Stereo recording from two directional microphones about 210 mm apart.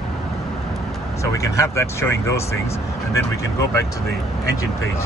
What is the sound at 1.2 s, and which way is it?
Speech, 15° left (ahead or behind).